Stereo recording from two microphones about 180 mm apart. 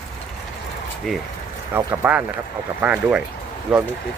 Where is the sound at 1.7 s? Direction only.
10° right (ahead or behind).